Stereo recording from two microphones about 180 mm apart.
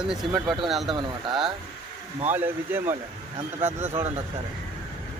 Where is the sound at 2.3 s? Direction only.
10° right (ahead or behind).